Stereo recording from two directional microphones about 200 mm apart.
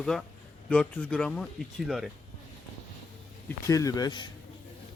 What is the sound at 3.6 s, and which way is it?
Speech, 15° left (ahead or behind).